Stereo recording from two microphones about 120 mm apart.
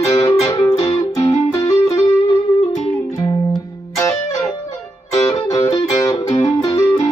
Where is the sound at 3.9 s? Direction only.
25° left (ahead or behind).